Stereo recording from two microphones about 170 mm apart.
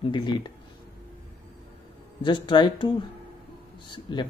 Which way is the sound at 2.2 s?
30° left (ahead or behind).